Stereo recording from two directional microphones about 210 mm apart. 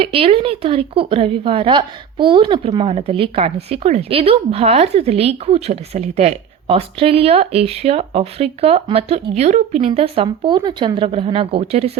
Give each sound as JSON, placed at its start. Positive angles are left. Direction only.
{"t": 0.0, "sound": "speech", "side_deg": -25}